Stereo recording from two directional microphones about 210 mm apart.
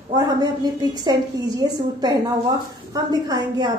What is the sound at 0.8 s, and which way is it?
A woman's voice, 20° right (ahead or behind).